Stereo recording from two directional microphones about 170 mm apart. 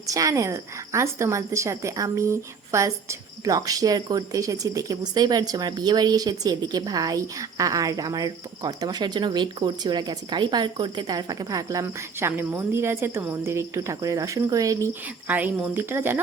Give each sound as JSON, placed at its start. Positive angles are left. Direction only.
{"t": 0.1, "sound": "a woman's voice", "side_deg": -20}